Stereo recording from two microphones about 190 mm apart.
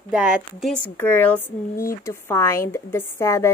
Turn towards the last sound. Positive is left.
turn(degrees=15)  # may be behind; listen again after turning